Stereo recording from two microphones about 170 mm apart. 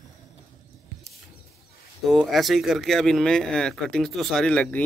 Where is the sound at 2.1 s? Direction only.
Centre (ahead or behind).